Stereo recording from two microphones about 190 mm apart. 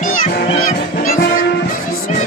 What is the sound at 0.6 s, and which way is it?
Music, 45° left (ahead or behind).